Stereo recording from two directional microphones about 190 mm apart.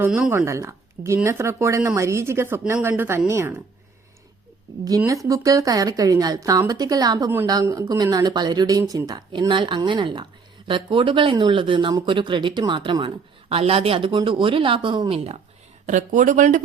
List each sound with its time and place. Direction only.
0.0 s speech: 10° right (ahead or behind)
4.9 s speech: 15° right (ahead or behind)
15.9 s speech: 45° right (ahead or behind)